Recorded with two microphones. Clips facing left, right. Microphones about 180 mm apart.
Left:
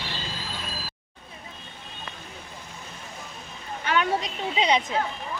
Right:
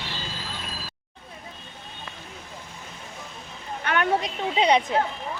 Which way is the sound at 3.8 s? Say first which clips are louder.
Right 1 dB; 55° right (ahead or behind).